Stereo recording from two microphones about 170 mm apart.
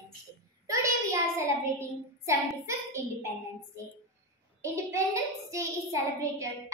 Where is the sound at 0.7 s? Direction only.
20° right (ahead or behind).